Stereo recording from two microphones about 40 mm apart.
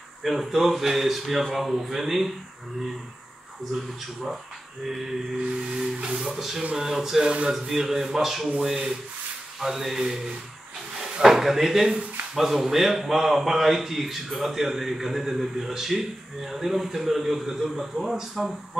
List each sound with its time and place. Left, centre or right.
0.2 s speech: centre
5.7 s music: right
6.2 s a man's voice: centre